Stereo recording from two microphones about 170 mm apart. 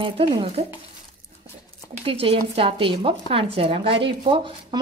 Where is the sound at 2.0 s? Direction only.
35° right (ahead or behind).